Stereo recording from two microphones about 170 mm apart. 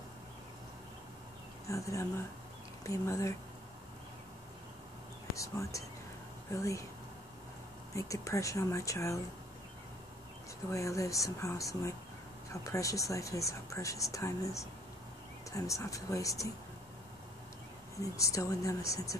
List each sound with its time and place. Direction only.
1.7 s speech: 20° left (ahead or behind)
5.3 s speech: 20° left (ahead or behind)
7.9 s speech: 20° left (ahead or behind)
10.7 s speech: 20° left (ahead or behind)
18.1 s speech: 20° left (ahead or behind)